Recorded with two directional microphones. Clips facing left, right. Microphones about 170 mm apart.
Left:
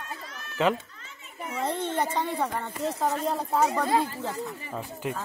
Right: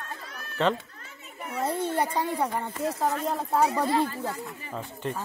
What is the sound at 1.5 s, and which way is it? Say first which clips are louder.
A child's voice: right 1 dB; 10° right (ahead or behind).